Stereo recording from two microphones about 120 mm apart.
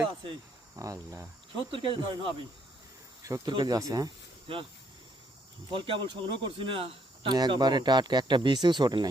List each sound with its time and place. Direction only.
0.8 s speech: 30° right (ahead or behind)
1.7 s cricket: 45° right (ahead or behind)
3.2 s speech: 30° right (ahead or behind)
3.5 s speech: 40° right (ahead or behind)
4.5 s cricket: 50° right (ahead or behind)
5.7 s speech: 45° right (ahead or behind)